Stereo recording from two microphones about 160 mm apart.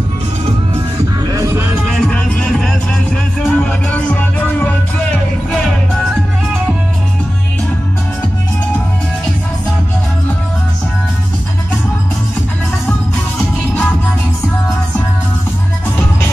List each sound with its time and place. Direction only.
1.2 s music: 20° right (ahead or behind)
2.0 s music: 5° left (ahead or behind)